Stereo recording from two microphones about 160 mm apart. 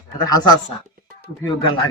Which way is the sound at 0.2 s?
25° left (ahead or behind).